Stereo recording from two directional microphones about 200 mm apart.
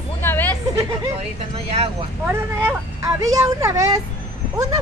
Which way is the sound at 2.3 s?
10° right (ahead or behind).